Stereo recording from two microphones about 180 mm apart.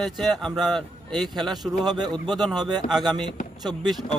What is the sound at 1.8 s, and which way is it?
Speech, 25° right (ahead or behind).